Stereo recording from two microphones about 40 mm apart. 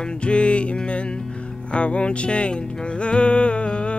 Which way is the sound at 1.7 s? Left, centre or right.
Left.